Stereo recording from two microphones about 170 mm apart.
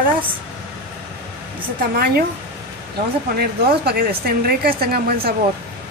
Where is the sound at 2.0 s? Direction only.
65° right (ahead or behind).